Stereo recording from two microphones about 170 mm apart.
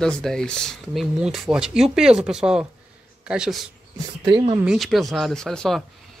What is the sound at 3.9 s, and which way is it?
Speech, 30° right (ahead or behind).